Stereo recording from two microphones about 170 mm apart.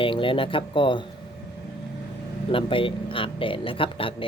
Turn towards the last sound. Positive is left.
turn(degrees=30)  # may be behind; listen again after turning